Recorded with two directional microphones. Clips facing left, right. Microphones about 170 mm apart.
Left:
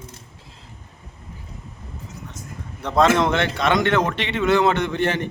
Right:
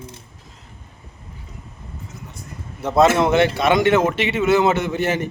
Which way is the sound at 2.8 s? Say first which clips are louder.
Right 2 dB; 5° right (ahead or behind).